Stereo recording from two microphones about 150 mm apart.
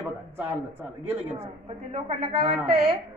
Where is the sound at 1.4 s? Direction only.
40° right (ahead or behind).